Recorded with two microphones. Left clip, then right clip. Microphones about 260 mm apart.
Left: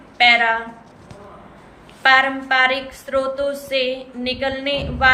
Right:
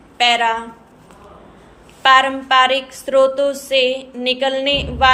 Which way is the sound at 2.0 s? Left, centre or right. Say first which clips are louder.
Right 2 dB; centre.